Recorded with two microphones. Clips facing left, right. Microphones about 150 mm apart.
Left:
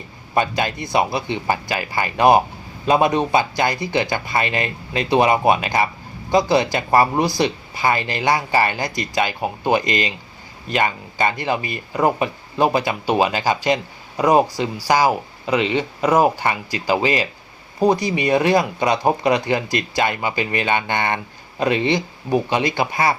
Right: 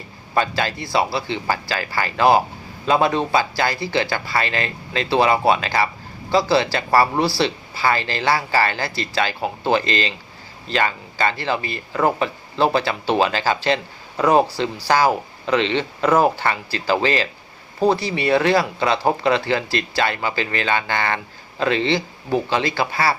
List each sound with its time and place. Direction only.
0.3 s speech: 20° left (ahead or behind)